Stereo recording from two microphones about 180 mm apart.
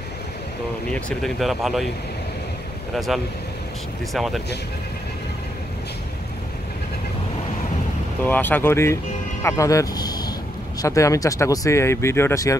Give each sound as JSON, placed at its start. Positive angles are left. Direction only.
{"t": 1.0, "sound": "speech", "side_deg": 0}
{"t": 4.1, "sound": "speech", "side_deg": 0}
{"t": 8.2, "sound": "speech", "side_deg": 10}